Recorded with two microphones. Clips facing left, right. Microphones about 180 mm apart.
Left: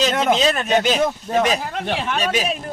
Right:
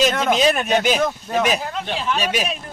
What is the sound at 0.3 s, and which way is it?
Speech, 15° right (ahead or behind).